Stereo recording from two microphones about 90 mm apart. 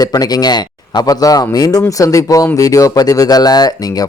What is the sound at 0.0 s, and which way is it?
Speech, 45° left (ahead or behind).